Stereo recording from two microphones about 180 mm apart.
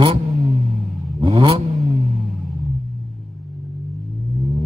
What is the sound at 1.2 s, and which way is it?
Vehicle, 30° right (ahead or behind).